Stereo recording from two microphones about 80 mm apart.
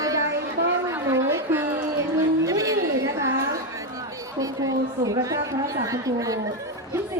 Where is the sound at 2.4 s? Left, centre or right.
Right.